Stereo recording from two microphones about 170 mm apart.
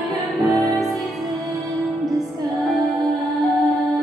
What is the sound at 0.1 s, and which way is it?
Music, centre (ahead or behind).